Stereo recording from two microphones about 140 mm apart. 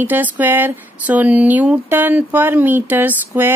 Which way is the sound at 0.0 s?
15° right (ahead or behind).